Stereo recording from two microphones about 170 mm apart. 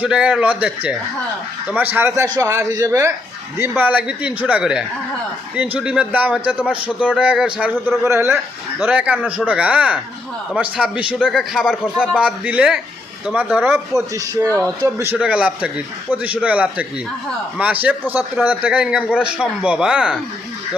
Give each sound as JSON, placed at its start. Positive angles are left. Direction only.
{"t": 0.0, "sound": "a man's voice", "side_deg": -5}